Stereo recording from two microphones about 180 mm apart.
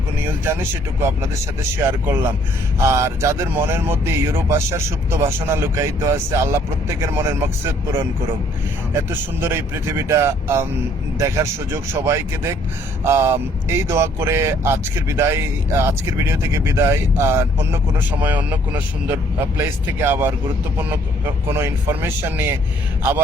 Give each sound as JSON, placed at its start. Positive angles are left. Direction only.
{"t": 1.9, "sound": "speech", "side_deg": -10}